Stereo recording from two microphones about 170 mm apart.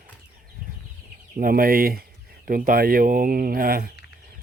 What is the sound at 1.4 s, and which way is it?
A man's voice, 60° right (ahead or behind).